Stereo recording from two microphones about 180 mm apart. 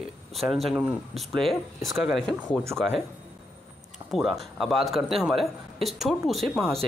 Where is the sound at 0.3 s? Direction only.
Centre (ahead or behind).